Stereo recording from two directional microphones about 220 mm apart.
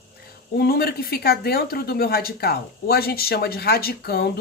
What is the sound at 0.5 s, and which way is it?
Speech, 45° left (ahead or behind).